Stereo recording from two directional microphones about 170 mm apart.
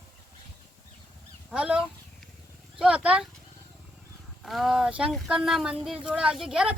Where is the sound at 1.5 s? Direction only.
5° right (ahead or behind).